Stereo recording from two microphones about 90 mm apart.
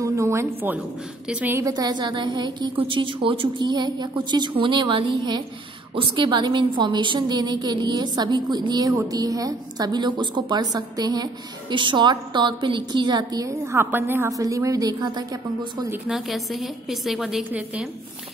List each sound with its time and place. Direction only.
0.0 s a woman's voice: 35° right (ahead or behind)
1.3 s a woman's voice: 20° right (ahead or behind)
1.6 s a woman's voice: 45° right (ahead or behind)
2.8 s a woman's voice: 70° right (ahead or behind); by 11.2 s 45° right (ahead or behind)
11.7 s a woman's voice: 60° right (ahead or behind); by 14.3 s 25° right (ahead or behind)
14.3 s a woman's voice: 35° right (ahead or behind)
16.1 s a woman's voice: centre (ahead or behind)
17.5 s a woman's voice: 15° right (ahead or behind)